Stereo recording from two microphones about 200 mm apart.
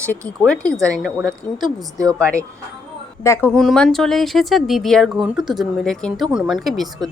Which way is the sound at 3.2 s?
15° left (ahead or behind).